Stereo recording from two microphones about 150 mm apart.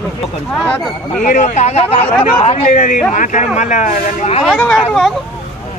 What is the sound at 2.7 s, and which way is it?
Speech, 60° left (ahead or behind).